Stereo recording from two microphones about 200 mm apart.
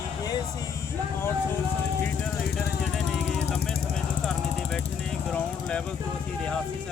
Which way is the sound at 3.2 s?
60° left (ahead or behind).